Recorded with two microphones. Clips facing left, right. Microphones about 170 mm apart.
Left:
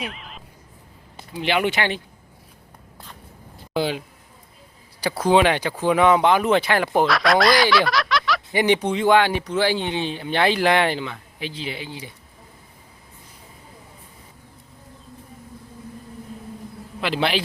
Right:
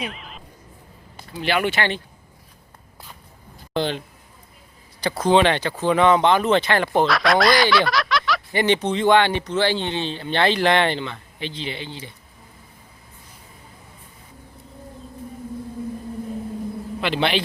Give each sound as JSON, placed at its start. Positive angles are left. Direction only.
{"t": 0.0, "sound": "a sound", "side_deg": 0}
{"t": 1.3, "sound": "speech", "side_deg": 15}
{"t": 3.8, "sound": "a man's voice", "side_deg": 5}
{"t": 8.4, "sound": "speech", "side_deg": 15}
{"t": 17.0, "sound": "a man's voice", "side_deg": 5}